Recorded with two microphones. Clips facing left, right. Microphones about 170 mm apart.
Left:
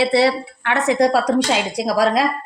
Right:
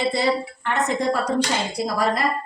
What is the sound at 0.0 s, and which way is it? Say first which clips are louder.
A woman's voice: left 5 dB; 75° left (ahead or behind).